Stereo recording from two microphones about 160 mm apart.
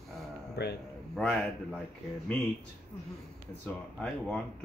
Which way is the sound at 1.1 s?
5° left (ahead or behind).